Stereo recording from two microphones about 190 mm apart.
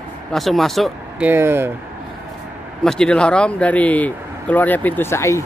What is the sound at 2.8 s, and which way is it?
Speech, 5° left (ahead or behind).